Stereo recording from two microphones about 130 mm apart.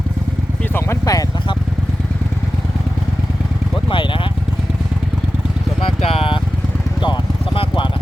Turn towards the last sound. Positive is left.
turn(degrees=40)  # may be behind; listen again after turning